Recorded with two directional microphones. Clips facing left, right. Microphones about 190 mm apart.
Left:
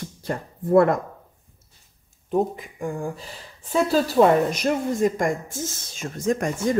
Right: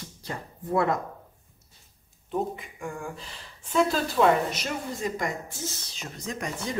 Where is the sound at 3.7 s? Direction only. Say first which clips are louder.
Left 4 dB; 40° left (ahead or behind).